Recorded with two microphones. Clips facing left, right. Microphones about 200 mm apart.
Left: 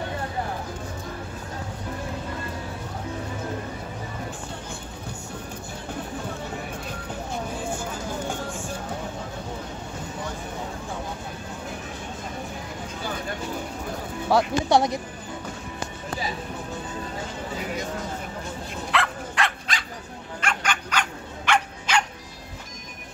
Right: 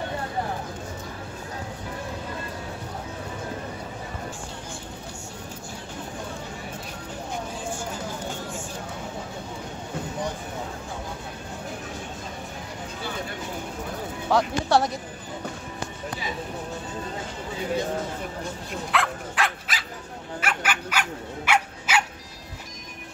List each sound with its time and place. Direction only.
14.3 s speech: 15° left (ahead or behind)
18.9 s dog: centre (ahead or behind)